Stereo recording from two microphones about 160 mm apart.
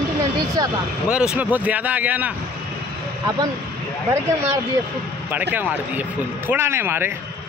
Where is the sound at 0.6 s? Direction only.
25° right (ahead or behind).